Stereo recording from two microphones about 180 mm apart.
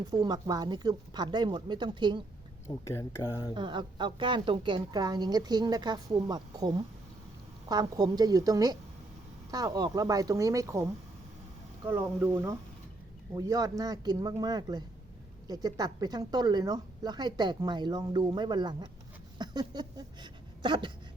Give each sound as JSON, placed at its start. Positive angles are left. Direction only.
{"t": 0.0, "sound": "speech", "side_deg": -20}
{"t": 2.6, "sound": "speech", "side_deg": 15}
{"t": 3.5, "sound": "speech", "side_deg": -25}
{"t": 11.9, "sound": "speech", "side_deg": -10}
{"t": 19.4, "sound": "a sound", "side_deg": -25}